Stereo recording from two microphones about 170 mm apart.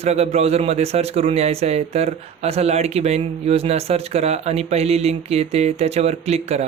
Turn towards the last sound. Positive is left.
turn(degrees=-40)  # may be behind; listen again after turning